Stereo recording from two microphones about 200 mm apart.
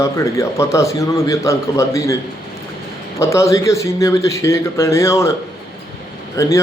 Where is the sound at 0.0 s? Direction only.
15° left (ahead or behind).